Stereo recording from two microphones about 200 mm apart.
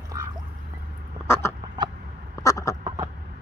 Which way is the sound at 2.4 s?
15° left (ahead or behind).